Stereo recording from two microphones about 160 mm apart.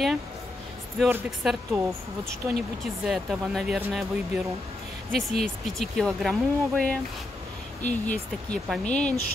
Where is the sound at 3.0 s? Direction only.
Centre (ahead or behind).